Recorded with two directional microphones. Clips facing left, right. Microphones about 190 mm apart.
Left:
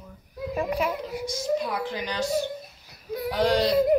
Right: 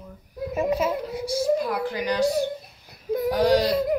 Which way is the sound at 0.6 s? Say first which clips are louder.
Right 4 dB; 20° right (ahead or behind).